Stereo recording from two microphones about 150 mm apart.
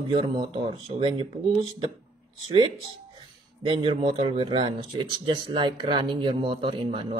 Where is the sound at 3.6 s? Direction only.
35° right (ahead or behind).